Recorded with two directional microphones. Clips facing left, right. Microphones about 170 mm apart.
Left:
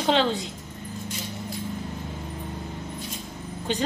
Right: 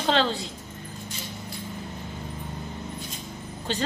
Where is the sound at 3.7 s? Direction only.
15° left (ahead or behind).